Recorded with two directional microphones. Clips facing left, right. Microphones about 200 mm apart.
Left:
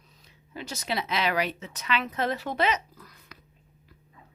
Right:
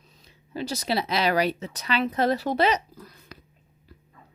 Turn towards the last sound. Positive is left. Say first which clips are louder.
# right 5 dB
turn(degrees=-30)  # may be behind; listen again after turning